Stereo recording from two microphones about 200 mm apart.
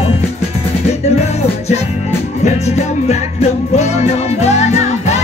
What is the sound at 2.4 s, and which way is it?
Music, 35° left (ahead or behind).